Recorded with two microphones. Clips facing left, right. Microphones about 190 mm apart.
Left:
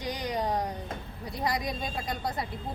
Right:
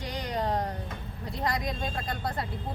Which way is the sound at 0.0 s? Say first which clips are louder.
Left 1 dB; 15° left (ahead or behind).